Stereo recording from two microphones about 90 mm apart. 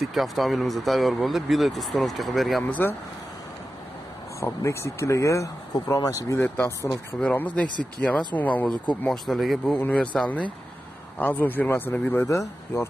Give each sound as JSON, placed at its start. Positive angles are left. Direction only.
{"t": 0.0, "sound": "speech", "side_deg": 0}
{"t": 2.6, "sound": "speech", "side_deg": 20}
{"t": 4.4, "sound": "speech", "side_deg": 35}
{"t": 6.4, "sound": "speech", "side_deg": 20}
{"t": 9.0, "sound": "speech", "side_deg": 5}
{"t": 9.8, "sound": "speech", "side_deg": 15}
{"t": 12.3, "sound": "speech", "side_deg": 35}